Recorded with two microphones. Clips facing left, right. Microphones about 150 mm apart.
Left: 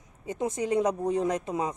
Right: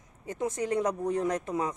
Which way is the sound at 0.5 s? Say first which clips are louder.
Left 3 dB; 15° left (ahead or behind).